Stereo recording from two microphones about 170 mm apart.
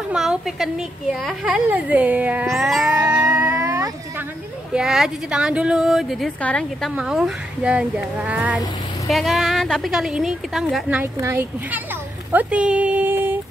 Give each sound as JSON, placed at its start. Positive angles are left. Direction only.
{"t": 0.1, "sound": "a woman's voice", "side_deg": -5}
{"t": 3.0, "sound": "music", "side_deg": -25}
{"t": 3.3, "sound": "cat", "side_deg": -15}
{"t": 4.7, "sound": "a woman's voice", "side_deg": -5}